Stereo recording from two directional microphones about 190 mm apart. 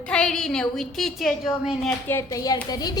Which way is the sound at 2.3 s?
20° left (ahead or behind).